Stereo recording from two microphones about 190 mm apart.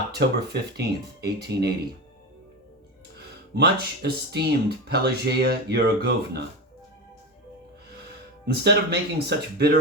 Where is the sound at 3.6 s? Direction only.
60° right (ahead or behind).